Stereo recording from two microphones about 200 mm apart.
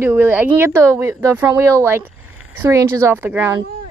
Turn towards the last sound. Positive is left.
turn(degrees=-10)  # may be behind; listen again after turning